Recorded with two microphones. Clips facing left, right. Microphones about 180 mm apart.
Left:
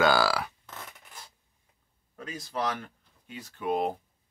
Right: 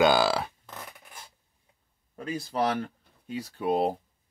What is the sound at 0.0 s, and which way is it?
Speech, 20° right (ahead or behind).